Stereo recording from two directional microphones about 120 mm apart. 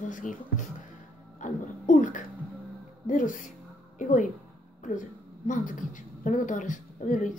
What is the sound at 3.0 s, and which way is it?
Speech, 90° left.